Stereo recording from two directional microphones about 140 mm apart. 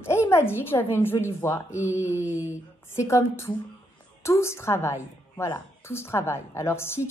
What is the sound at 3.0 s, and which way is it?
A woman's voice, 20° left (ahead or behind).